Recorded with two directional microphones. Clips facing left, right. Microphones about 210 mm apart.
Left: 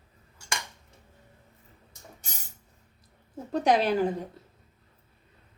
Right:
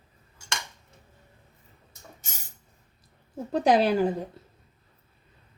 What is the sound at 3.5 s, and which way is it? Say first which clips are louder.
Speech: right 2 dB; 35° right (ahead or behind).